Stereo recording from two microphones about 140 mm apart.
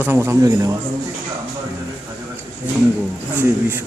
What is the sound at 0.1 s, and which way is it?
Speech, 15° right (ahead or behind).